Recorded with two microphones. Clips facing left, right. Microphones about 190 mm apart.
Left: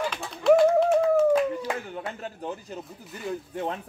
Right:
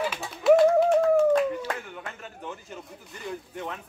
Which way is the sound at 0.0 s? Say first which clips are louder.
Even; 5° right (ahead or behind).